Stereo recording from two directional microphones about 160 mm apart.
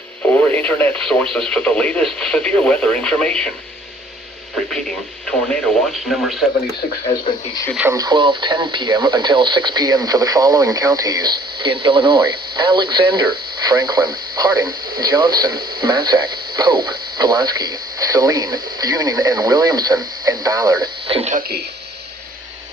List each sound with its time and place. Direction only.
0.2 s speech: 10° left (ahead or behind)
5.2 s speech: 5° left (ahead or behind)
7.3 s speech: 25° left (ahead or behind)
7.8 s speech: 20° right (ahead or behind); by 21.3 s 35° right (ahead or behind)
21.3 s speech: 75° right (ahead or behind)